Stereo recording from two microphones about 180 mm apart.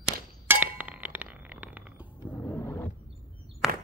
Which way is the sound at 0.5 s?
10° right (ahead or behind).